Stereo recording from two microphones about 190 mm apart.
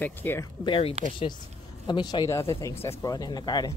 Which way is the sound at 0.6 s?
30° left (ahead or behind).